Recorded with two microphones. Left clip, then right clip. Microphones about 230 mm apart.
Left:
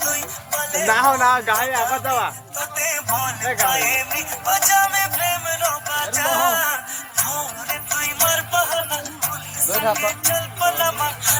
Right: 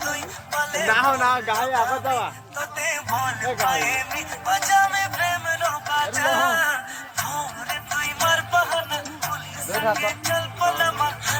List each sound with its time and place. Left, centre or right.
0.0 s music: left
0.9 s speech: left
2.7 s music: left
6.4 s speech: left
7.2 s music: left